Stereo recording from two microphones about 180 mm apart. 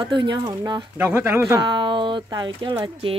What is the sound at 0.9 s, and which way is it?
Speech, 10° right (ahead or behind).